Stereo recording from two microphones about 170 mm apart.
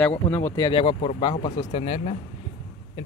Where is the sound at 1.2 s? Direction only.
25° left (ahead or behind).